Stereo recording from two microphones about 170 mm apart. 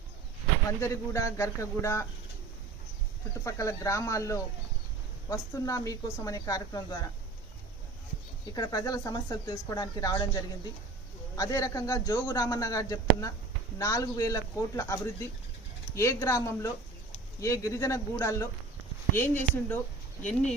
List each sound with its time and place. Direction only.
0.8 s a man's voice: 15° left (ahead or behind)
3.4 s a man's voice: 15° left (ahead or behind)
8.5 s a man's voice: 20° left (ahead or behind)
11.3 s a man's voice: 20° left (ahead or behind)